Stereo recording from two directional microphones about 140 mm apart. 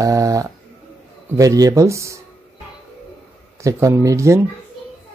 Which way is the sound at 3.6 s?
20° right (ahead or behind).